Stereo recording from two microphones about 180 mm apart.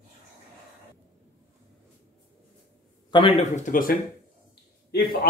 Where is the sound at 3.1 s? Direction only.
30° left (ahead or behind).